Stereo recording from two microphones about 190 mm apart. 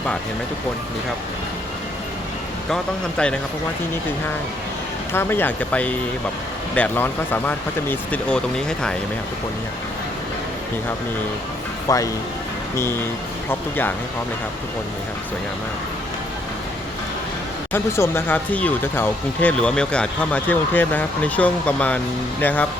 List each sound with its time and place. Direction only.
2.6 s speech: 5° left (ahead or behind)
5.1 s speech: 10° left (ahead or behind)
11.9 s speech: 15° left (ahead or behind)
17.7 s speech: 10° left (ahead or behind)